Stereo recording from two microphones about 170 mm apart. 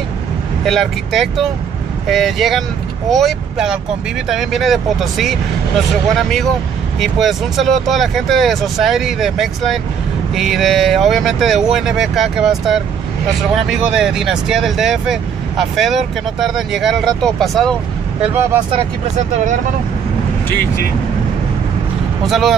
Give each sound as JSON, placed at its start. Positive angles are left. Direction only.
{"t": 0.7, "sound": "speech", "side_deg": 0}
{"t": 7.0, "sound": "speech", "side_deg": 0}
{"t": 18.2, "sound": "speech", "side_deg": -10}
{"t": 18.7, "sound": "speech", "side_deg": -45}
{"t": 22.2, "sound": "speech", "side_deg": 0}